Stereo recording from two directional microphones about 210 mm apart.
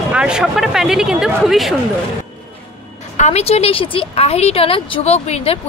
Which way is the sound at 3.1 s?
30° left (ahead or behind).